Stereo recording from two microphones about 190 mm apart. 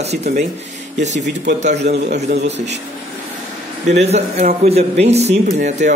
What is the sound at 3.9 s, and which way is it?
Speech, 35° right (ahead or behind).